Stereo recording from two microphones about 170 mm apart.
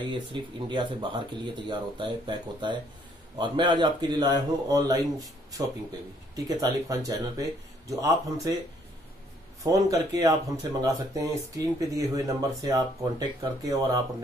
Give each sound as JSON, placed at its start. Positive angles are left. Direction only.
{"t": 0.0, "sound": "speech", "side_deg": -30}
{"t": 6.3, "sound": "speech", "side_deg": -20}
{"t": 9.6, "sound": "speech", "side_deg": -20}